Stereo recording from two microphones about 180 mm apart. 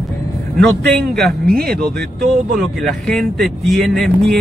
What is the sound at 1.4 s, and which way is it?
Speech, 55° right (ahead or behind).